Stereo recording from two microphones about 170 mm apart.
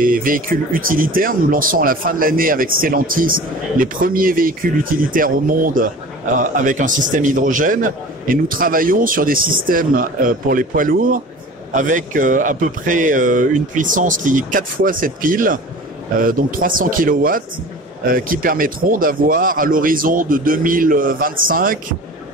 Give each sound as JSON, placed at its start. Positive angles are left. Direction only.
{"t": 0.0, "sound": "a man's voice", "side_deg": -55}